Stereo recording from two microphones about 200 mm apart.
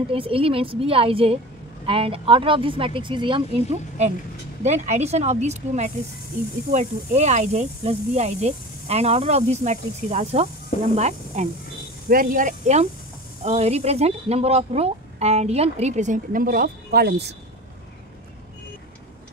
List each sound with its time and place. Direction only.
0.1 s speech: 25° right (ahead or behind); by 17.4 s 55° right (ahead or behind)